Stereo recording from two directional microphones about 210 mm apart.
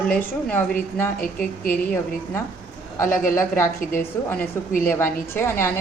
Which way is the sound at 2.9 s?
10° left (ahead or behind).